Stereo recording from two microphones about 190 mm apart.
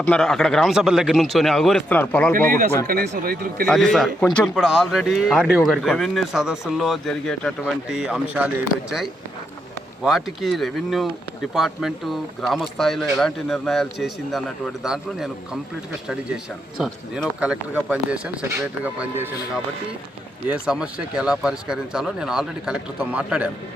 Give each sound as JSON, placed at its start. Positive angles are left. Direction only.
{"t": 0.0, "sound": "speech", "side_deg": 5}
{"t": 2.8, "sound": "speech", "side_deg": -50}
{"t": 3.7, "sound": "speech", "side_deg": 0}
{"t": 17.4, "sound": "speech", "side_deg": -5}
{"t": 20.5, "sound": "speech", "side_deg": -5}